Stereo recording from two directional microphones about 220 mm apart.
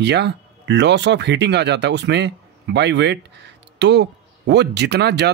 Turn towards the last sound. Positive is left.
turn(degrees=-50)  # may be behind; listen again after turning